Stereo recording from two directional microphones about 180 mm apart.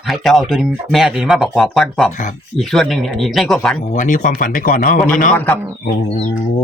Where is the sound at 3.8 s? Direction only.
45° left (ahead or behind).